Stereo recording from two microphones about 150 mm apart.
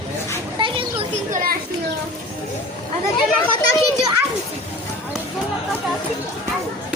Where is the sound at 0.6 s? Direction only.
35° right (ahead or behind).